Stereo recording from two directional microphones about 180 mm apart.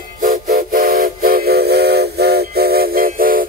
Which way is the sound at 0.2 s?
50° right (ahead or behind).